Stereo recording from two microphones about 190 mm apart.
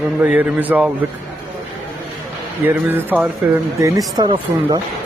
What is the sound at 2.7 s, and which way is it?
Speech, 10° right (ahead or behind).